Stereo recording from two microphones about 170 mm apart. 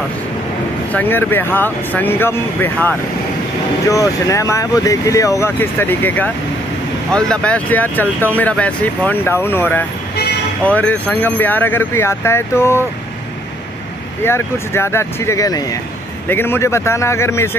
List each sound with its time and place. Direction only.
0.9 s speech: 10° left (ahead or behind)
14.2 s speech: 15° left (ahead or behind)